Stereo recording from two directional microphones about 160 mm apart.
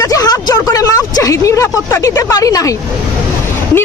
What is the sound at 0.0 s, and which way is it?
Speech, 20° left (ahead or behind).